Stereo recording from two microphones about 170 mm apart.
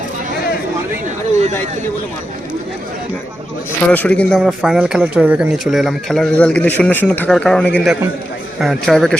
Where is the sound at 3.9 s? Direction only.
10° left (ahead or behind).